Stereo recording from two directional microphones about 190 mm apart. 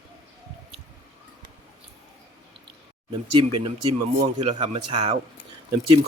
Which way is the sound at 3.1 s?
25° right (ahead or behind).